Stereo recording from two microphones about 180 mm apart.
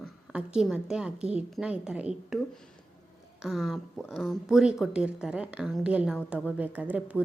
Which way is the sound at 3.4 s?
Centre (ahead or behind).